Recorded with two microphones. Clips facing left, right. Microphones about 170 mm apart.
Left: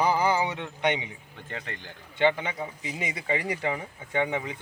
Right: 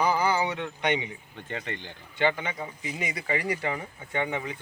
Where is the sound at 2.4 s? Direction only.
15° left (ahead or behind).